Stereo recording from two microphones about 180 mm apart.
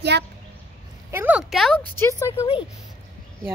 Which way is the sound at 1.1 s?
10° right (ahead or behind).